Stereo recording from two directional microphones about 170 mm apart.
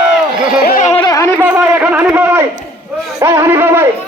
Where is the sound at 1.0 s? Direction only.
20° left (ahead or behind).